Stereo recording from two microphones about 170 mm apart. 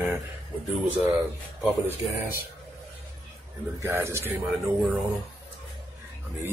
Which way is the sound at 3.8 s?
15° right (ahead or behind).